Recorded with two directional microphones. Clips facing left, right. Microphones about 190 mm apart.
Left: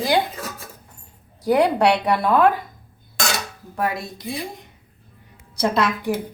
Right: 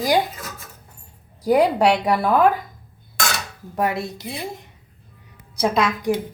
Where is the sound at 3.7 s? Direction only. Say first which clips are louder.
Right 2 dB; 25° right (ahead or behind).